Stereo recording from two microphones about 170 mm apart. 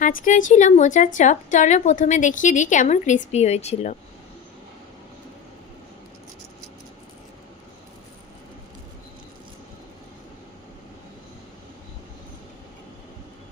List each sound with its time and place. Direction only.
0.0 s a woman's voice: 50° left (ahead or behind)